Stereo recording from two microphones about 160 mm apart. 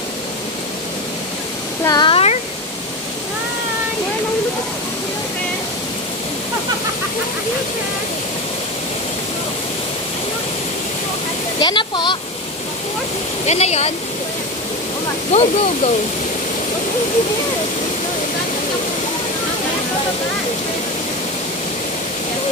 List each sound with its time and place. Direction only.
1.9 s a sound: 30° left (ahead or behind)
11.6 s a child's voice: 30° left (ahead or behind)
13.5 s speech: 45° left (ahead or behind)
15.3 s speech: 45° left (ahead or behind)